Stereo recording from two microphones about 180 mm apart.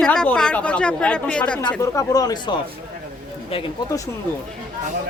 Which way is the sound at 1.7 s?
15° left (ahead or behind).